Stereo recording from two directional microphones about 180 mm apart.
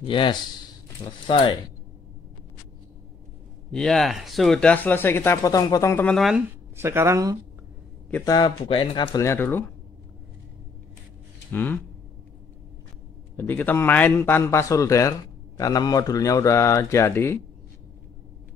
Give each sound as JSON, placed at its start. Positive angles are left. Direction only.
{"t": 0.0, "sound": "speech", "side_deg": 25}
{"t": 3.7, "sound": "speech", "side_deg": 5}
{"t": 6.8, "sound": "speech", "side_deg": -15}
{"t": 8.3, "sound": "speech", "side_deg": 25}
{"t": 11.5, "sound": "speech", "side_deg": 10}
{"t": 13.4, "sound": "speech", "side_deg": 10}